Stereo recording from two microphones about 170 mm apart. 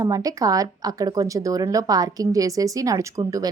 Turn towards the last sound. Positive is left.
turn(degrees=-20)  # may be behind; listen again after turning